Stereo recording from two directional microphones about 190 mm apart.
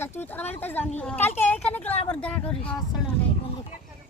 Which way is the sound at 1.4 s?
10° left (ahead or behind).